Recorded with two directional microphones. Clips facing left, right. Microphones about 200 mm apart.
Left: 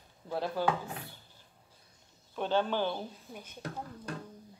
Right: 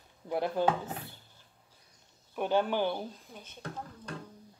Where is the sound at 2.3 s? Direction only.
15° right (ahead or behind).